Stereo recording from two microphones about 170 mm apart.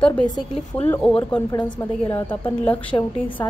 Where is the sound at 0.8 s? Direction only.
10° left (ahead or behind).